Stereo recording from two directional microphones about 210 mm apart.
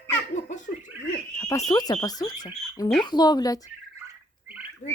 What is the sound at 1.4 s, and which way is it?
Speech, 15° left (ahead or behind).